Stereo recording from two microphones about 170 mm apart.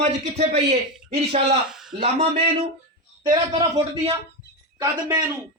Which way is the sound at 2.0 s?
35° right (ahead or behind).